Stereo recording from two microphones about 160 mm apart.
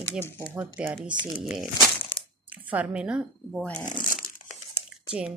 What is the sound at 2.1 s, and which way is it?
Crumpling, 35° left (ahead or behind).